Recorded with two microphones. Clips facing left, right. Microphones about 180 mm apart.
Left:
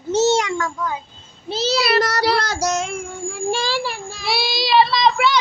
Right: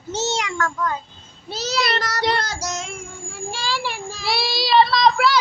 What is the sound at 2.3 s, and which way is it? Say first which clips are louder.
Child singing: left 6 dB; 70° left (ahead or behind).